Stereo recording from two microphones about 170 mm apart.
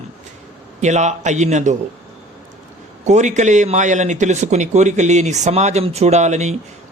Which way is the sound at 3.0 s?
45° right (ahead or behind).